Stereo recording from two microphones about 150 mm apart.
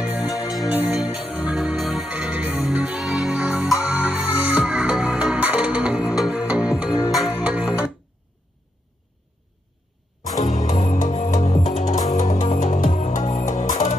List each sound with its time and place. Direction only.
0.0 s music: centre (ahead or behind)
1.5 s music: centre (ahead or behind)
10.2 s music: 55° left (ahead or behind)